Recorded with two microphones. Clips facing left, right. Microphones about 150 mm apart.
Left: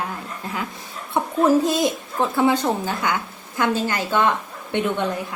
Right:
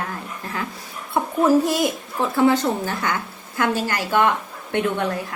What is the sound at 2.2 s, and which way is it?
A woman's voice, 15° left (ahead or behind).